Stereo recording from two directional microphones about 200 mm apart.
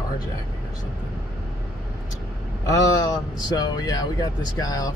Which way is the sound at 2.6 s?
15° left (ahead or behind).